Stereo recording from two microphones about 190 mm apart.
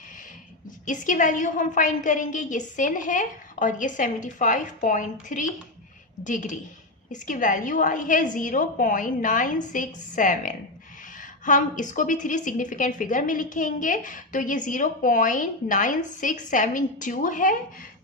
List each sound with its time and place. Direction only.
0.9 s a woman's voice: 40° left (ahead or behind)